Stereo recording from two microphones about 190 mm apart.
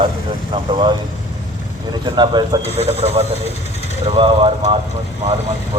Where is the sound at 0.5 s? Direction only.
25° right (ahead or behind).